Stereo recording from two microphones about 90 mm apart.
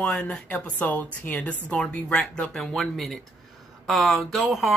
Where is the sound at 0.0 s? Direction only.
10° left (ahead or behind).